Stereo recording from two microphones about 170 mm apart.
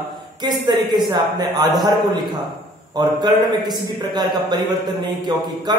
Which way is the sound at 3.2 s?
25° right (ahead or behind).